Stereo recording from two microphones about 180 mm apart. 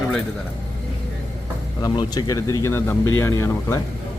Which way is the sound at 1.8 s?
20° left (ahead or behind).